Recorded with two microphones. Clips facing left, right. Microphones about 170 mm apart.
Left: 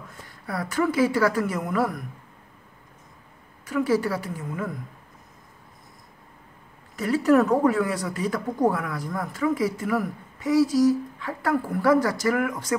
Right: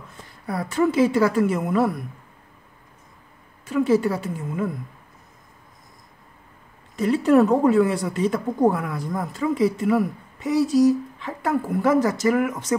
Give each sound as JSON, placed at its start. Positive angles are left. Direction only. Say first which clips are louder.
{"t": 0.5, "sound": "speech", "louder": "right 3 dB", "side_deg": -25}
{"t": 3.6, "sound": "speech", "louder": "right 4 dB", "side_deg": -25}
{"t": 7.0, "sound": "speech", "louder": "right 3 dB", "side_deg": -25}